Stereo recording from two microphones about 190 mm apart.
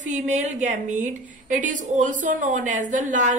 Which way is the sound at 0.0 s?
40° right (ahead or behind).